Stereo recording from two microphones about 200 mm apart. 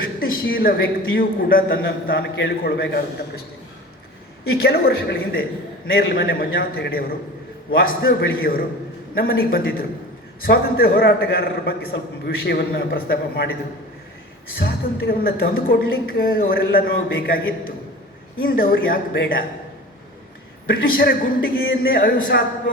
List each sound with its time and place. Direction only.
0.5 s a man's voice: 50° left (ahead or behind)
4.6 s a man's voice: 50° left (ahead or behind)
14.6 s a man's voice: 50° left (ahead or behind)
20.7 s a man's voice: 50° left (ahead or behind)